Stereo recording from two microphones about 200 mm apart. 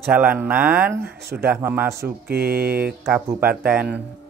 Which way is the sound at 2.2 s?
50° right (ahead or behind).